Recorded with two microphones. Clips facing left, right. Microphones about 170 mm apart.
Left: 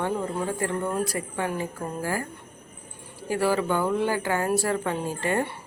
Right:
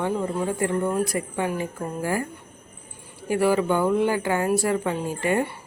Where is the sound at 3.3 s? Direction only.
15° right (ahead or behind).